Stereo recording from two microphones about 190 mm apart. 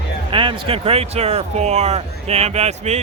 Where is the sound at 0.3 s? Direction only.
25° right (ahead or behind).